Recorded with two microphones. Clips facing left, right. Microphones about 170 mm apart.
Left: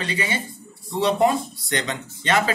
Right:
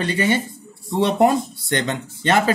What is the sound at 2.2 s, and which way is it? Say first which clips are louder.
Speech: right 3 dB; 45° right (ahead or behind).